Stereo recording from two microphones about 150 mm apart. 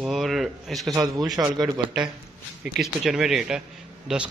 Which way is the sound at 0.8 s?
25° right (ahead or behind).